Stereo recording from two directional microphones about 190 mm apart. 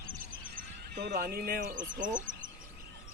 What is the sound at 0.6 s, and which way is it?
Speech, 55° right (ahead or behind).